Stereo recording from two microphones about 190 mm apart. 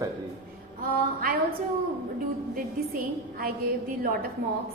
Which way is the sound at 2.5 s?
50° right (ahead or behind).